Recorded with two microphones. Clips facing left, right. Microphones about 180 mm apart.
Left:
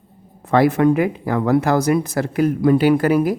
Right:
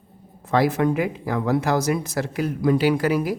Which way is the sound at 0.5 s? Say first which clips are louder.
Left 5 dB; 55° left (ahead or behind).